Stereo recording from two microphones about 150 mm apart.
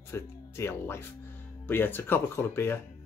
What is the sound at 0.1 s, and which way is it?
Speech, 15° left (ahead or behind).